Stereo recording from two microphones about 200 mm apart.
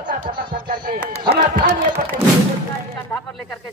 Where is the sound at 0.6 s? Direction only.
45° right (ahead or behind).